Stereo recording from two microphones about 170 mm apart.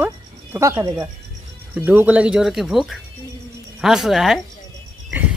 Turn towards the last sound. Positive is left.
turn(degrees=-10)  # may be behind; listen again after turning